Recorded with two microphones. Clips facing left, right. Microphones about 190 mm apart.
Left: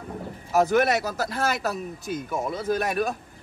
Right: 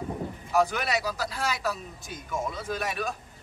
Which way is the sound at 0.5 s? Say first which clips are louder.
Left 6 dB; 50° left (ahead or behind).